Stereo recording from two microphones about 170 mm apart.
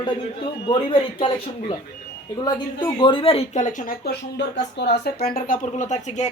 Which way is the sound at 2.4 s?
25° left (ahead or behind).